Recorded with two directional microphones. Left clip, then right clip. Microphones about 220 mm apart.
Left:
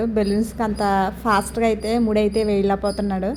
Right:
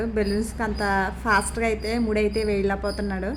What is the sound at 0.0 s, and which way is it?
A woman's voice, 10° left (ahead or behind).